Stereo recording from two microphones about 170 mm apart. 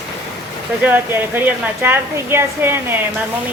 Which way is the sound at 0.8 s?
10° right (ahead or behind).